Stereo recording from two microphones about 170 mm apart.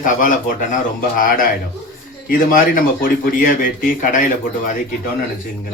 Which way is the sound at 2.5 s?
55° left (ahead or behind).